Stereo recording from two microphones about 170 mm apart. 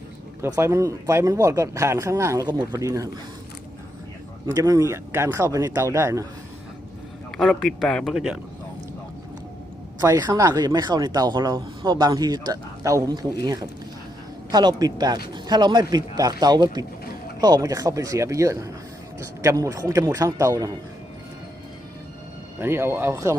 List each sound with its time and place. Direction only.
0.4 s speech: 15° right (ahead or behind)
4.5 s speech: 20° right (ahead or behind)
7.3 s a man's voice: 5° left (ahead or behind)
10.0 s speech: 20° right (ahead or behind)
22.6 s speech: 15° right (ahead or behind)